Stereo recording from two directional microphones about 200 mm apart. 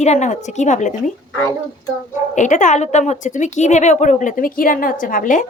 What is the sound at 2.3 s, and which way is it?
A woman's voice, 40° left (ahead or behind).